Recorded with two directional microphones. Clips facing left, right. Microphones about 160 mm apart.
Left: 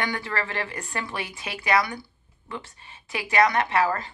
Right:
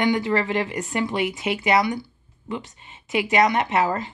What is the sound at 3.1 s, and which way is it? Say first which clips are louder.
Speech: right 3 dB; 20° right (ahead or behind).